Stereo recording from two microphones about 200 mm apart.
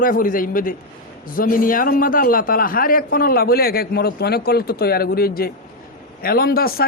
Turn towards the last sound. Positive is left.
turn(degrees=50)  # may be behind; listen again after turning